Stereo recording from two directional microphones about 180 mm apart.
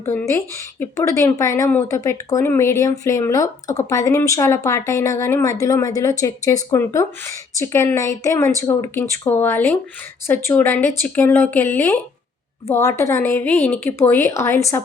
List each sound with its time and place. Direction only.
0.0 s a woman's voice: 15° left (ahead or behind)